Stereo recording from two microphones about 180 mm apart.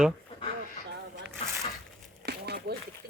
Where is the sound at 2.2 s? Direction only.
65° right (ahead or behind).